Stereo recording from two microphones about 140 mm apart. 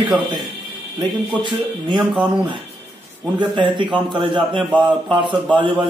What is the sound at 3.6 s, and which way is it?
Speech, 35° right (ahead or behind).